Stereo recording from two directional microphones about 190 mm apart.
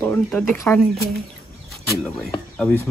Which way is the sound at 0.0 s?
10° left (ahead or behind).